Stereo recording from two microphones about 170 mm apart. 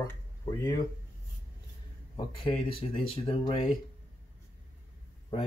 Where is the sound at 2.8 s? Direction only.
30° left (ahead or behind).